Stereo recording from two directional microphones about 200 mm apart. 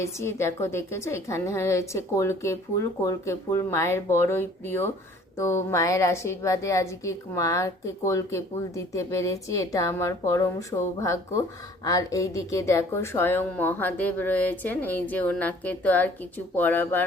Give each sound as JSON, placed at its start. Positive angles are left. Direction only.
{"t": 0.0, "sound": "a woman's voice", "side_deg": 15}